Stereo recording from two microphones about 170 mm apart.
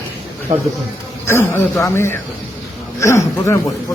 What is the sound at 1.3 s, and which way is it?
A man's voice, 10° left (ahead or behind).